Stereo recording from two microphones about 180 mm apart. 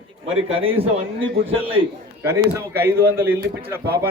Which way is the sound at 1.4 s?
30° right (ahead or behind).